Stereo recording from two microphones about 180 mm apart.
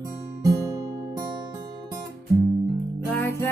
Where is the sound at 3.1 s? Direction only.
15° left (ahead or behind).